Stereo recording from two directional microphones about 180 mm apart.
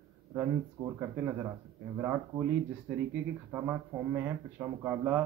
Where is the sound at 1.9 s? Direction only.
10° right (ahead or behind).